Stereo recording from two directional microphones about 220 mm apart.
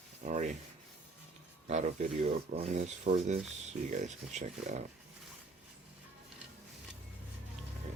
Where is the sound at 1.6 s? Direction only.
30° right (ahead or behind).